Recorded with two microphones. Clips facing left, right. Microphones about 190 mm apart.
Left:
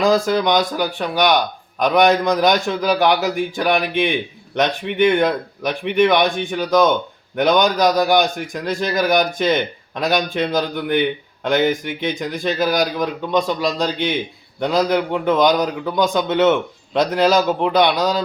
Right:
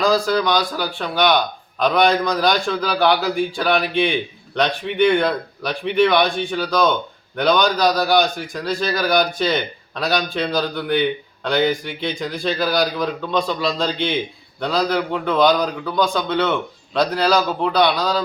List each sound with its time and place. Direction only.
0.0 s a man's voice: 20° left (ahead or behind)